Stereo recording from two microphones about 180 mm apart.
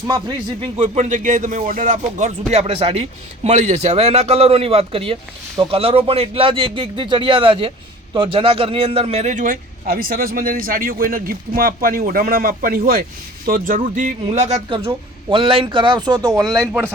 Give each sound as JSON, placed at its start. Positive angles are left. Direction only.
{"t": 0.8, "sound": "a man's voice", "side_deg": -40}